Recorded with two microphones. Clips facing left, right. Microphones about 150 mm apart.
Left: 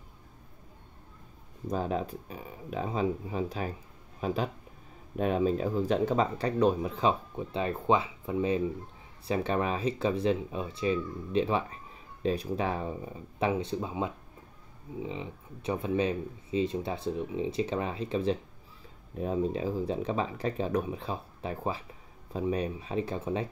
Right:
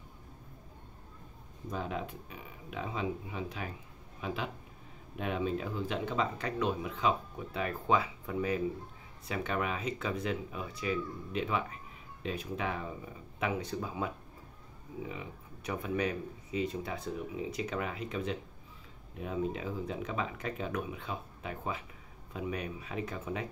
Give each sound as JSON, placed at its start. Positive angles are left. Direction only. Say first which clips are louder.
{"t": 1.7, "sound": "speech", "louder": "left 6 dB", "side_deg": 35}